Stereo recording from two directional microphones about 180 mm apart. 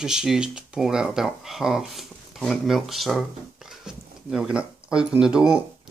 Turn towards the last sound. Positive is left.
turn(degrees=-5)  # may be behind; listen again after turning